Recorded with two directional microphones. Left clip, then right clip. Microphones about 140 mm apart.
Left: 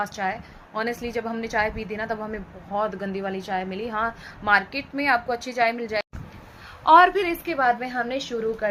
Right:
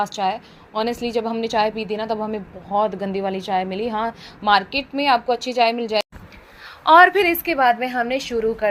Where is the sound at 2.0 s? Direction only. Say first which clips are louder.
Right 5 dB; 25° right (ahead or behind).